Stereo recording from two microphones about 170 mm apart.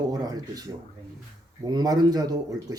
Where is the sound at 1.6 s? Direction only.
25° right (ahead or behind).